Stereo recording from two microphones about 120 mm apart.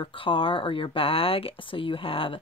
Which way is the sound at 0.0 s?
45° left (ahead or behind).